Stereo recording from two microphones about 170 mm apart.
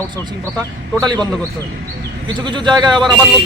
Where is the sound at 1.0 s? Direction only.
25° right (ahead or behind).